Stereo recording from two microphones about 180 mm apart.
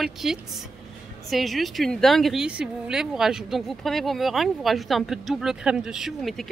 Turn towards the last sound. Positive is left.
turn(degrees=0)  # may be behind; listen again after turning